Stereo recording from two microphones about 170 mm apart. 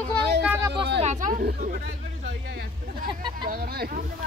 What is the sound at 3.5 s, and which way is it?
Speech, 60° right (ahead or behind).